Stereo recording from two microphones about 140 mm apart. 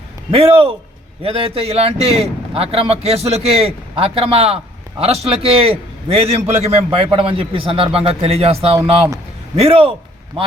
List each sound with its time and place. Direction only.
0.3 s a man's voice: 40° right (ahead or behind)